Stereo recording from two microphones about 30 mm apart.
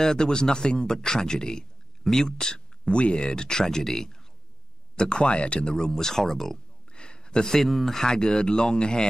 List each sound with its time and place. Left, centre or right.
0.0 s a man's voice: left
4.9 s speech: left
5.9 s speech: centre
6.9 s a sound: left
7.4 s speech: centre
8.0 s a man's voice: left